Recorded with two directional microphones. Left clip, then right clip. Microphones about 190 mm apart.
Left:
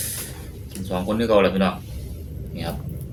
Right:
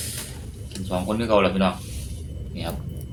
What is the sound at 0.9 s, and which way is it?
Speech, 15° left (ahead or behind).